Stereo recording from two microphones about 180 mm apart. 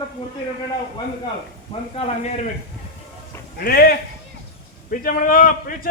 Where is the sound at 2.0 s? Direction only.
40° left (ahead or behind).